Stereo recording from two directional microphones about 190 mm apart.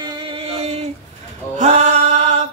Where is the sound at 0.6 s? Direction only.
35° right (ahead or behind).